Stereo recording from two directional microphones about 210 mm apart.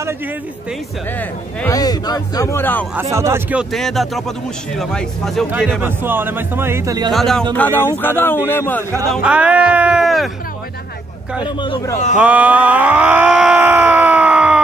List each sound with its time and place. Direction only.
1.7 s a man's voice: 20° left (ahead or behind)
3.0 s speech: 15° right (ahead or behind)
5.8 s speech: 10° right (ahead or behind)
7.1 s a man's voice: centre (ahead or behind)
9.1 s speech: 5° right (ahead or behind)
11.4 s speech: 20° left (ahead or behind)
12.2 s groan: 5° right (ahead or behind)